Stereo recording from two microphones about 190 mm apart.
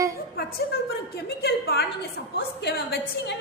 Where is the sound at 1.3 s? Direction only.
55° left (ahead or behind).